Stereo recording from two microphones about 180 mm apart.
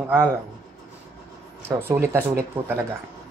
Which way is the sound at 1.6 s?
15° right (ahead or behind).